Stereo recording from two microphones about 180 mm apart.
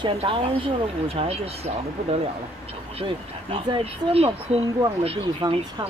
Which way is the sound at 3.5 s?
35° right (ahead or behind).